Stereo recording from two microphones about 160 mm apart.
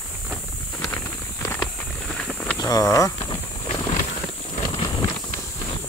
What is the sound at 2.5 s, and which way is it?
Speech, 25° left (ahead or behind).